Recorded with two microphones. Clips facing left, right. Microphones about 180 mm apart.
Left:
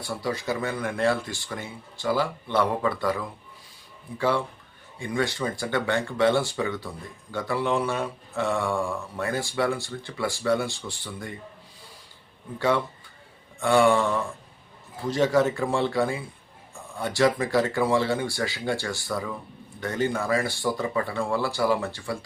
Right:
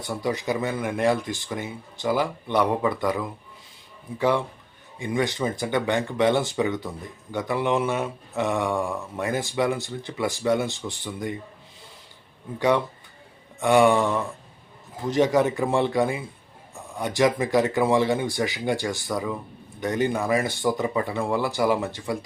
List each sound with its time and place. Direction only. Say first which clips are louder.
0.0 s speech: right 2 dB; 20° right (ahead or behind)
12.5 s speech: right 2 dB; 15° right (ahead or behind)